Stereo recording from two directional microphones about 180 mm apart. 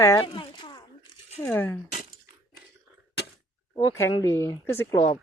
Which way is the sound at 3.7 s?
15° left (ahead or behind).